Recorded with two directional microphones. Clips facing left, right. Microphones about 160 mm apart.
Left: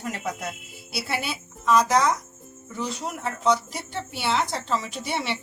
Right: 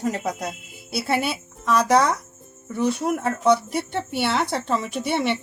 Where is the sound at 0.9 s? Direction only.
50° right (ahead or behind).